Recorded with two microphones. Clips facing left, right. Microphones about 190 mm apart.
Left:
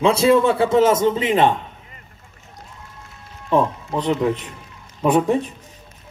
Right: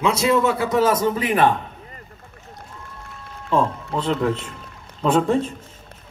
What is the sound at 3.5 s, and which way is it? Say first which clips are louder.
A man's voice: left 2 dB; 20° left (ahead or behind).